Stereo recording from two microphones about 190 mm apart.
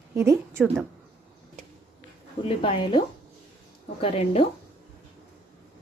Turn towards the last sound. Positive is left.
turn(degrees=30)  # may be behind; listen again after turning